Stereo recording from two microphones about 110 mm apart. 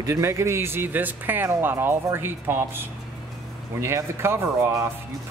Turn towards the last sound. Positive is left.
turn(degrees=-25)  # may be behind; listen again after turning